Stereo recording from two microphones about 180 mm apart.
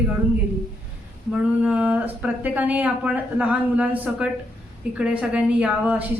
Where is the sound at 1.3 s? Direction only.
5° right (ahead or behind).